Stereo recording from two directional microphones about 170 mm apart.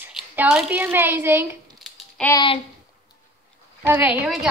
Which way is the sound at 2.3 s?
30° left (ahead or behind).